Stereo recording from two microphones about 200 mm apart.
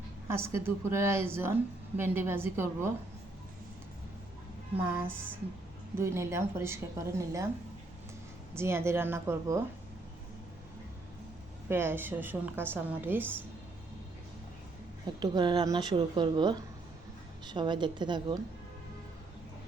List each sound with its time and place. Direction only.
0.3 s a woman's voice: 15° right (ahead or behind)
4.8 s a woman's voice: 10° right (ahead or behind)
8.5 s a woman's voice: 10° right (ahead or behind)
11.7 s a woman's voice: 10° right (ahead or behind)
15.2 s a woman's voice: 20° right (ahead or behind)